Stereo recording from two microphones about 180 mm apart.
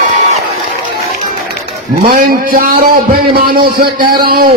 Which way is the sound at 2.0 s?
55° right (ahead or behind).